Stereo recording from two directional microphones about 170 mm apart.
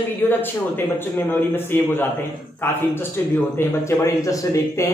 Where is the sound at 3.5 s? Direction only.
15° left (ahead or behind).